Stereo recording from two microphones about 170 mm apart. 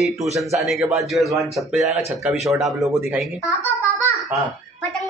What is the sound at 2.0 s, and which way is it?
Speech, 15° right (ahead or behind).